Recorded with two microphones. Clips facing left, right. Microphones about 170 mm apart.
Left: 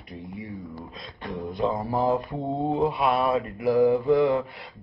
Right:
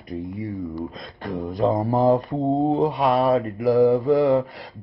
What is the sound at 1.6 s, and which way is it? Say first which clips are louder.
Speech: right 6 dB; 40° right (ahead or behind).